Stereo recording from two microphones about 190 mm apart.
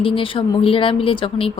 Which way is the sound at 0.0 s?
30° left (ahead or behind).